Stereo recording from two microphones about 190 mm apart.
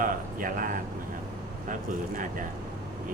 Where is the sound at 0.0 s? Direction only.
45° right (ahead or behind).